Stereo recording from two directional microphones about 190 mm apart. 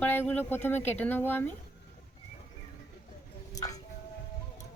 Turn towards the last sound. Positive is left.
turn(degrees=20)  # may be behind; listen again after turning